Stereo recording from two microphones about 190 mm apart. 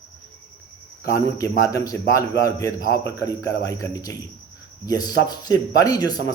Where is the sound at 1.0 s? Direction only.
15° left (ahead or behind).